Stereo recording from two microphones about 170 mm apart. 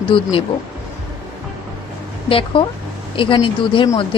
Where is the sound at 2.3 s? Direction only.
30° left (ahead or behind).